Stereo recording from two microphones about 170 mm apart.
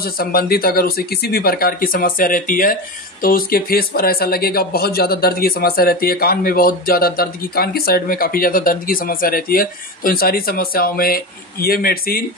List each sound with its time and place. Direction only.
0.0 s speech: 65° left (ahead or behind)